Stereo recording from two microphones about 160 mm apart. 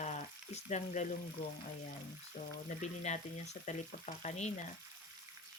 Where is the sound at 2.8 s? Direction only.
45° left (ahead or behind).